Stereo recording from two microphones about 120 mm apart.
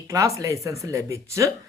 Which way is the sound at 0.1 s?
25° right (ahead or behind).